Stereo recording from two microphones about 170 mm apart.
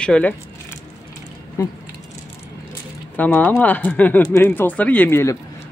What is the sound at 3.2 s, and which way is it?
Speech, 10° left (ahead or behind).